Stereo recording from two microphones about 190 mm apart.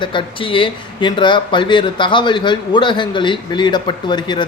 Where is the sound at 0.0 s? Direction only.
25° left (ahead or behind).